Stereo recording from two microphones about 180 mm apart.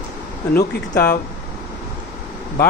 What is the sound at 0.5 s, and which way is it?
Speech, 55° left (ahead or behind).